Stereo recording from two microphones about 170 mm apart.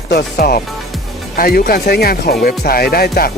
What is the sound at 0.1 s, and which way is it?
Speech, 70° left (ahead or behind).